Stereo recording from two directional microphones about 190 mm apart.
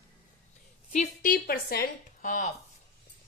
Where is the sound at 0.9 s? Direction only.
40° left (ahead or behind).